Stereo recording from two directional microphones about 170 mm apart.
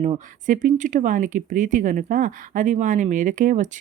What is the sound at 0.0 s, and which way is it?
Speech, 45° right (ahead or behind).